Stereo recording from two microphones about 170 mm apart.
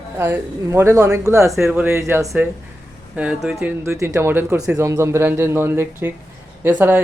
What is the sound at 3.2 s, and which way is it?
Speech, 5° right (ahead or behind).